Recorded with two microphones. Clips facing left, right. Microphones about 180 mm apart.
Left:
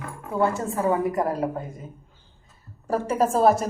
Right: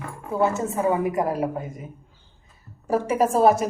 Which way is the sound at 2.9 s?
5° right (ahead or behind).